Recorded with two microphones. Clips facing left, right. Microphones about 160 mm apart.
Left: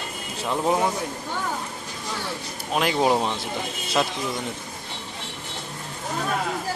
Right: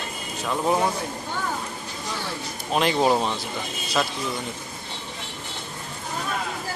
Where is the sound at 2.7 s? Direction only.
10° left (ahead or behind).